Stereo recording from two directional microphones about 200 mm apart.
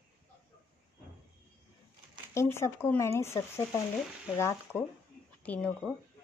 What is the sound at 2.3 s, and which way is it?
Speech, 15° left (ahead or behind).